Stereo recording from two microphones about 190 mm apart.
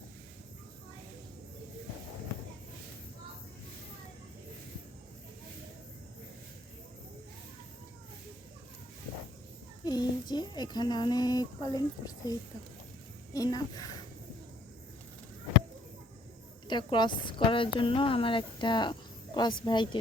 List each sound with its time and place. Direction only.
9.8 s speech: 20° left (ahead or behind)
16.6 s speech: 25° left (ahead or behind)